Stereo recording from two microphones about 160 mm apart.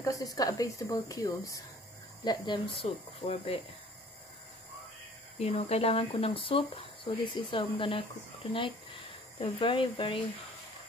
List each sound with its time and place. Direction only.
0.0 s a woman's voice: 20° left (ahead or behind)
5.4 s a woman's voice: 40° left (ahead or behind)
9.4 s speech: 35° left (ahead or behind)